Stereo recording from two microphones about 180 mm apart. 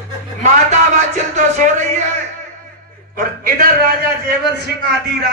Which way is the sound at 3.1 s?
55° right (ahead or behind).